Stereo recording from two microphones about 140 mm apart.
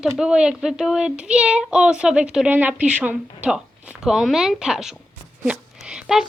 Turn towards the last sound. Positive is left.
turn(degrees=-5)  # may be behind; listen again after turning